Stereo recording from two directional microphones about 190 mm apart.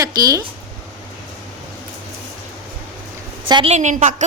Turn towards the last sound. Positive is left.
turn(degrees=-40)  # may be behind; listen again after turning